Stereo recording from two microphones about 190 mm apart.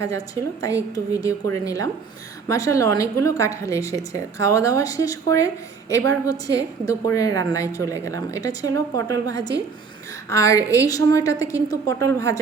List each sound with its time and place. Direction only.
0.9 s a woman's voice: 20° left (ahead or behind)